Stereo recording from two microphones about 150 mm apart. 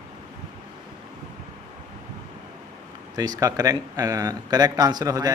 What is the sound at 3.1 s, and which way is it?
Speech, 25° right (ahead or behind).